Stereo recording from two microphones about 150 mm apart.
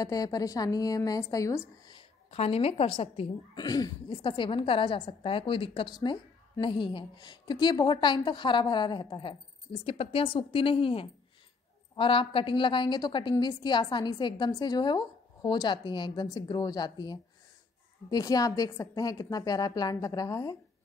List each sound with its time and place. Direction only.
0.0 s a woman's voice: 25° left (ahead or behind)
1.9 s a woman's voice: 40° left (ahead or behind)